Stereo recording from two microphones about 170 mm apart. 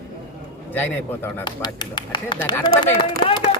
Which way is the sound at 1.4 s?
25° left (ahead or behind).